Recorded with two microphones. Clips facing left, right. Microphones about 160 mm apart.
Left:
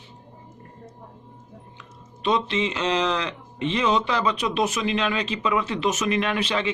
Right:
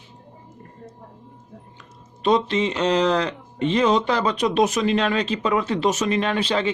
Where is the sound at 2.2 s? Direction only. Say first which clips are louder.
Right 4 dB; 40° right (ahead or behind).